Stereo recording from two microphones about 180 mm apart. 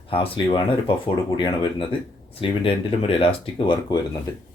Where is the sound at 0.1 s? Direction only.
30° left (ahead or behind).